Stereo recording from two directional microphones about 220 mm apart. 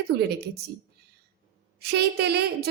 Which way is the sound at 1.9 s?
45° right (ahead or behind).